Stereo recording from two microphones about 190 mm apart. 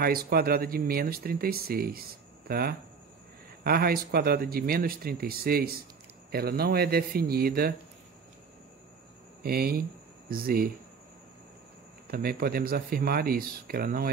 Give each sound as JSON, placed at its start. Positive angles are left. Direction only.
{"t": 0.0, "sound": "a man's voice", "side_deg": -50}
{"t": 9.4, "sound": "speech", "side_deg": -55}
{"t": 12.1, "sound": "speech", "side_deg": -55}